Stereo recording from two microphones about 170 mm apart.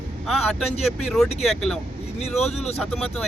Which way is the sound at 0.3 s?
Centre (ahead or behind).